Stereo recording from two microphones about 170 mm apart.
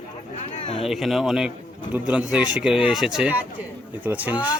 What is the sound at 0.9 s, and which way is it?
Speech, centre (ahead or behind).